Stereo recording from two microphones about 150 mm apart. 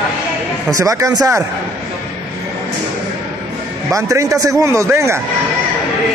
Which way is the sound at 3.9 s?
20° right (ahead or behind).